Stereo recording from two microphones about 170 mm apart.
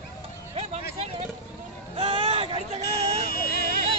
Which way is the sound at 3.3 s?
60° left (ahead or behind).